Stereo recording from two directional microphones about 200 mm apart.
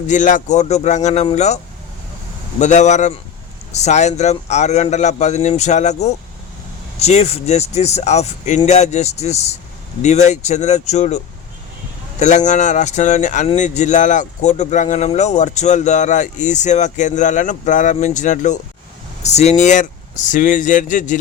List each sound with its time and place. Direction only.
0.1 s speech: 40° left (ahead or behind)
2.6 s speech: 35° left (ahead or behind)
12.5 s speech: 35° left (ahead or behind)